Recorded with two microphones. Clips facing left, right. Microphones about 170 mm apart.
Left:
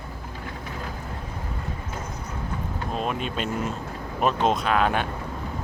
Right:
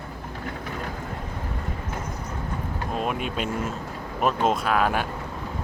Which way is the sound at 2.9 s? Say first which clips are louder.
Right 1 dB; 5° right (ahead or behind).